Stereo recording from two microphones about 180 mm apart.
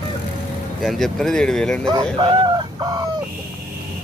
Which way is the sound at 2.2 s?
25° right (ahead or behind).